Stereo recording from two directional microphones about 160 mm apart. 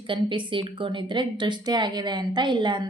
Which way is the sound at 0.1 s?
30° right (ahead or behind).